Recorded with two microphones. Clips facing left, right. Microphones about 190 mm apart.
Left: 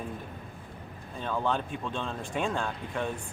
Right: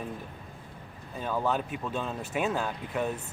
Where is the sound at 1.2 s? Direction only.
5° right (ahead or behind).